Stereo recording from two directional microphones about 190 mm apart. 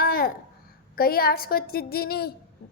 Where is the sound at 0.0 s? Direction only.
50° left (ahead or behind).